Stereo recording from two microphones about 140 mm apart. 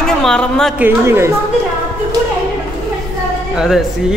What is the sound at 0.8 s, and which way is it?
Speech, 15° right (ahead or behind).